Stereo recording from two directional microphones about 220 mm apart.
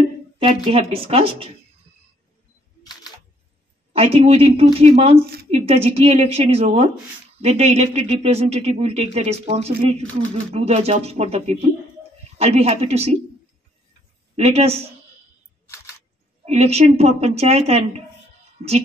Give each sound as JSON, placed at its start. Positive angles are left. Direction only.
{"t": 0.7, "sound": "speech", "side_deg": -25}
{"t": 2.8, "sound": "camera", "side_deg": 20}
{"t": 3.9, "sound": "speech", "side_deg": -25}
{"t": 14.3, "sound": "speech", "side_deg": -30}
{"t": 16.4, "sound": "speech", "side_deg": -30}